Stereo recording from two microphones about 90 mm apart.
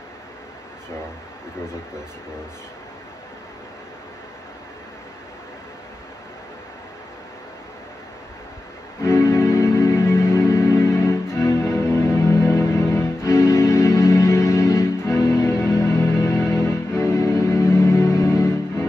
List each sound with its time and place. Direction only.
9.0 s music: 35° left (ahead or behind)